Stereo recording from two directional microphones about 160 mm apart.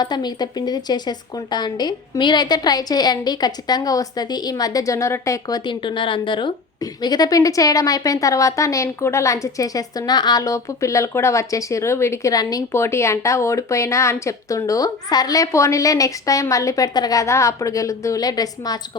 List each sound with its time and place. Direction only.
0.0 s a woman's voice: 25° left (ahead or behind)